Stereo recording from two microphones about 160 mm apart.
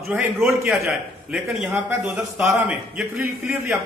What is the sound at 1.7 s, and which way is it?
Speech, 15° right (ahead or behind).